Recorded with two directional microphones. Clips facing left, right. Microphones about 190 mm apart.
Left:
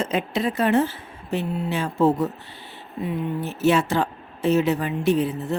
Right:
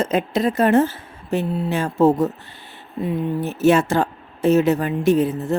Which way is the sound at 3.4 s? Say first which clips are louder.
Right 4 dB; 45° right (ahead or behind).